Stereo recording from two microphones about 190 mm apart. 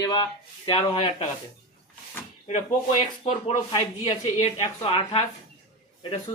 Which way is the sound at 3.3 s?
35° left (ahead or behind).